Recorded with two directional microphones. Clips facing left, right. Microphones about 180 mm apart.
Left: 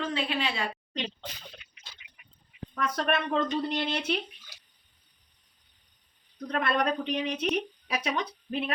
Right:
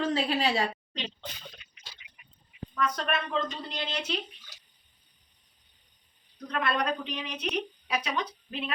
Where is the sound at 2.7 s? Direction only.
55° left (ahead or behind).